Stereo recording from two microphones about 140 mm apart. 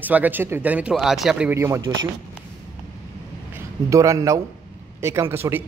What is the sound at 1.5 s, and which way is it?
Speech, 20° right (ahead or behind).